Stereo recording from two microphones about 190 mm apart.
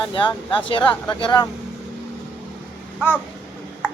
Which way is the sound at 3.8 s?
10° left (ahead or behind).